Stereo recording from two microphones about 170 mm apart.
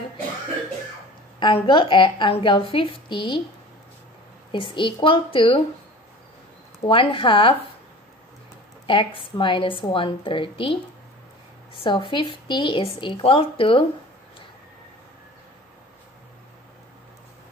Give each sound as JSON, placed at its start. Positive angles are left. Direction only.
{"t": 1.4, "sound": "speech", "side_deg": 30}
{"t": 4.5, "sound": "speech", "side_deg": 30}
{"t": 6.8, "sound": "a woman's voice", "side_deg": 30}
{"t": 8.8, "sound": "a woman's voice", "side_deg": 30}
{"t": 11.8, "sound": "speech", "side_deg": 30}